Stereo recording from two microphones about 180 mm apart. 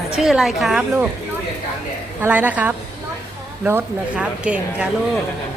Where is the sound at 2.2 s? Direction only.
10° right (ahead or behind).